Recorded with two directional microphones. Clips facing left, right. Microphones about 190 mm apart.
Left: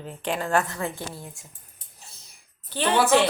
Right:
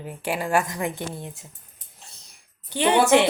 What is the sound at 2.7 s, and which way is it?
Speech, 15° right (ahead or behind).